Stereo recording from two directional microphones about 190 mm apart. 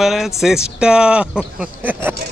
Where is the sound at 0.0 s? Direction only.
Centre (ahead or behind).